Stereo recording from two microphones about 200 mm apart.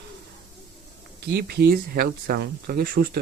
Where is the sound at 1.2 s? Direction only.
50° right (ahead or behind).